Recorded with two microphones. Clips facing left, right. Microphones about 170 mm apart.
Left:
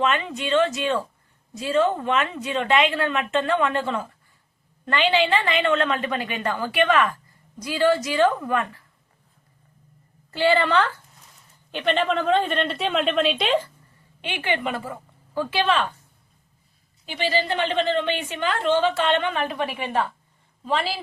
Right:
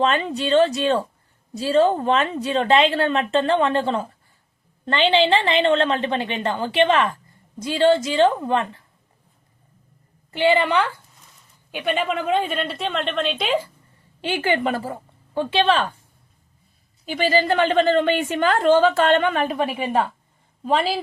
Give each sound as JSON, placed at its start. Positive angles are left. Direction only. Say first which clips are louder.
{"t": 0.0, "sound": "a woman's voice", "louder": "right 3 dB", "side_deg": -35}
{"t": 10.3, "sound": "a woman's voice", "louder": "right 1 dB", "side_deg": -20}
{"t": 14.2, "sound": "a woman's voice", "louder": "right 5 dB", "side_deg": -40}
{"t": 17.1, "sound": "a woman's voice", "louder": "right 5 dB", "side_deg": -45}